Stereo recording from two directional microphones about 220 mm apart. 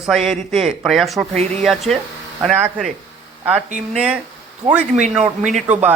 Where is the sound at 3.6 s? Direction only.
35° right (ahead or behind).